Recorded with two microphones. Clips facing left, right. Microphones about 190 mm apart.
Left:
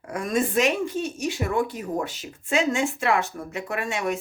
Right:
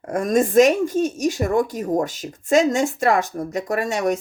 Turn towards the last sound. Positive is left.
turn(degrees=-40)  # may be behind; listen again after turning